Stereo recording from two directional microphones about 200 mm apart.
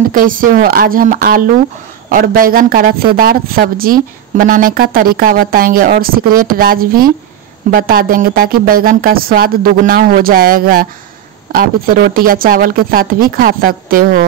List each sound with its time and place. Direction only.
0.1 s speech: 45° right (ahead or behind)